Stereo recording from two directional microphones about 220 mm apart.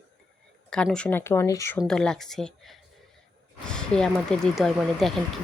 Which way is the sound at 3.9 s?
5° left (ahead or behind).